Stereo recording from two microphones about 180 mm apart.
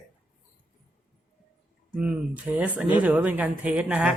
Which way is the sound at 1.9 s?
5° right (ahead or behind).